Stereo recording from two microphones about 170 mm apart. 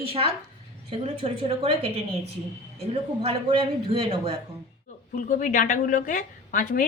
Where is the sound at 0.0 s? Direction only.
35° right (ahead or behind).